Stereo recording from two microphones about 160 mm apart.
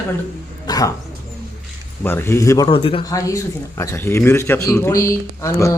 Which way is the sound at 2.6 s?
35° left (ahead or behind).